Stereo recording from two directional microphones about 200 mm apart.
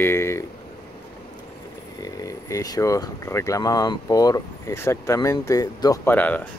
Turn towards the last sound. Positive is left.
turn(degrees=10)  # may be behind; listen again after turning